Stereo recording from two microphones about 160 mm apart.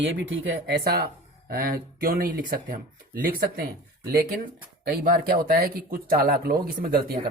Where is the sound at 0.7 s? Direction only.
75° right (ahead or behind).